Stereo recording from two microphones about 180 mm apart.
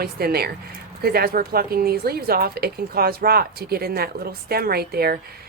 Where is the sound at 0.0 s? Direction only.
60° right (ahead or behind).